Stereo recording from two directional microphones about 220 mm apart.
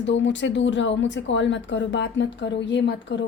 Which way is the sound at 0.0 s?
55° left (ahead or behind).